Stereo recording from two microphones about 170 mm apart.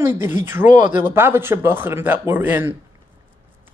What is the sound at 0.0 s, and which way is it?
Speech, 15° right (ahead or behind).